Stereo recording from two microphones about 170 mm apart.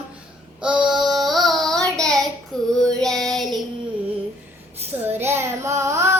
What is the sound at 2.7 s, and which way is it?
Child singing, 5° left (ahead or behind).